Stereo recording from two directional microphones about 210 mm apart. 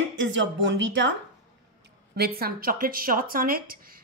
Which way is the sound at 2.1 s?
45° right (ahead or behind).